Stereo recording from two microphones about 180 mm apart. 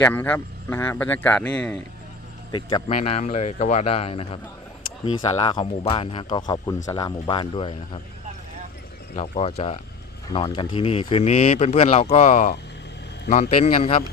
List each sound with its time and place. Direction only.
0.0 s speech: 10° left (ahead or behind)
2.5 s speech: 25° left (ahead or behind)
9.1 s speech: 35° left (ahead or behind)